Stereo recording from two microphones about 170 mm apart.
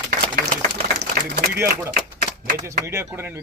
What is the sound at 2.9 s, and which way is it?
Speech, 15° right (ahead or behind).